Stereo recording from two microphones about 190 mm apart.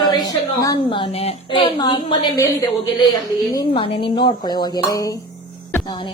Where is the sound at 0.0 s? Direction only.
20° left (ahead or behind).